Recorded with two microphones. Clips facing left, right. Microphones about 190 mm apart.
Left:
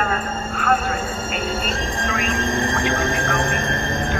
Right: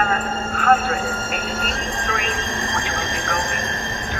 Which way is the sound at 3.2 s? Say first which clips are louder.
Left 3 dB; 55° left (ahead or behind).